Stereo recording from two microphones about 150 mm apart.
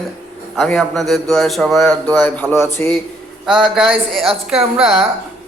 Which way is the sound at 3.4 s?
5° right (ahead or behind).